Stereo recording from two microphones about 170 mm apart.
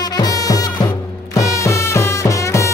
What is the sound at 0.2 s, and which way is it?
Music, 20° left (ahead or behind).